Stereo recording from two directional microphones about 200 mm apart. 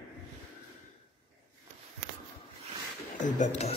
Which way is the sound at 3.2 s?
35° left (ahead or behind).